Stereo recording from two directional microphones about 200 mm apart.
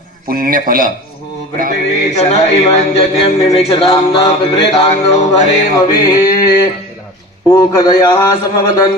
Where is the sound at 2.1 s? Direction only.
30° left (ahead or behind).